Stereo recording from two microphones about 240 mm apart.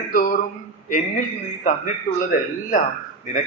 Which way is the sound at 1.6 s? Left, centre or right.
Left.